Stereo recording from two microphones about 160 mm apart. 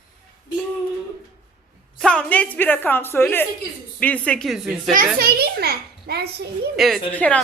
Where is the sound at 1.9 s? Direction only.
5° left (ahead or behind).